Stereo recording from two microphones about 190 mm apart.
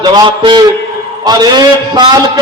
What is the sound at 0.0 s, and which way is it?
A man's voice, 25° right (ahead or behind).